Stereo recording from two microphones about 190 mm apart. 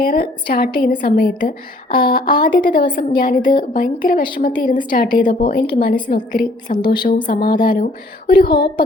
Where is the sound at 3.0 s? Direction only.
55° left (ahead or behind).